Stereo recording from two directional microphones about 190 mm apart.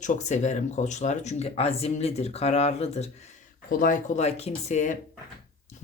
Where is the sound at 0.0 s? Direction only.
40° left (ahead or behind).